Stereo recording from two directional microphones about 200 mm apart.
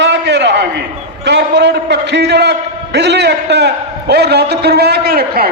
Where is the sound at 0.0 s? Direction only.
60° right (ahead or behind).